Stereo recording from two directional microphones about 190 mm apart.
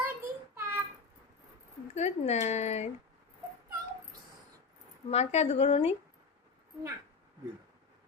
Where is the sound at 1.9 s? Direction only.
35° left (ahead or behind).